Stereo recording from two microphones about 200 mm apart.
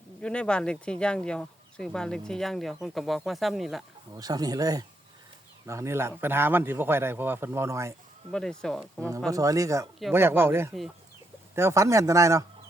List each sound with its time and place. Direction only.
0.2 s speech: 5° left (ahead or behind)
4.1 s a man's voice: 20° right (ahead or behind)
8.3 s speech: 5° left (ahead or behind)
9.0 s a man's voice: 15° right (ahead or behind)